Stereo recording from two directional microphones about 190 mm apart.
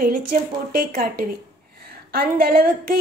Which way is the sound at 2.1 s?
50° right (ahead or behind).